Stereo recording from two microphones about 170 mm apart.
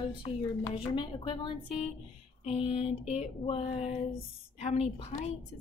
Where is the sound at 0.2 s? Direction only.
30° left (ahead or behind).